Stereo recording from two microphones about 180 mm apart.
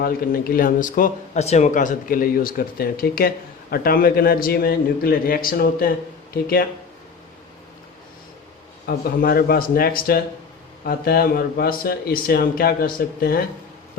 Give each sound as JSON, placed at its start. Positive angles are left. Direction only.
{"t": 0.0, "sound": "speech", "side_deg": 55}
{"t": 8.9, "sound": "speech", "side_deg": 55}